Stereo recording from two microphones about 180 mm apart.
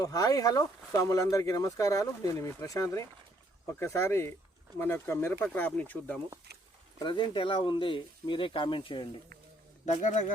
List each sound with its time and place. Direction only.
0.0 s speech: 20° left (ahead or behind)
7.0 s speech: 25° left (ahead or behind)
9.8 s a man's voice: 40° left (ahead or behind)